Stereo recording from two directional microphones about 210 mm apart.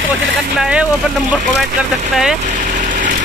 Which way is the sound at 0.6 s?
5° right (ahead or behind).